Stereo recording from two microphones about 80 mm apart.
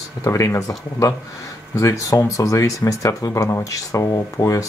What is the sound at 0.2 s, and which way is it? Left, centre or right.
Speech, left.